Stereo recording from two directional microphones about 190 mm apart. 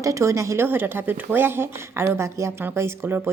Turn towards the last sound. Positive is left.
turn(degrees=-10)  # may be behind; listen again after turning